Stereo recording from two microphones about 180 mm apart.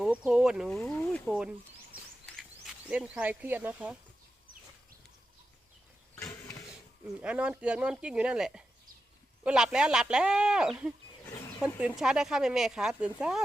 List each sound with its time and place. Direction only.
0.0 s speech: 5° right (ahead or behind)
1.3 s speech: 5° right (ahead or behind)
6.1 s a sound: 15° left (ahead or behind)
7.2 s speech: 5° right (ahead or behind)